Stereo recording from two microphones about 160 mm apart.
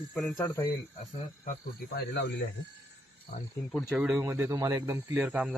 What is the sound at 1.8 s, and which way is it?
Speech, 90° left.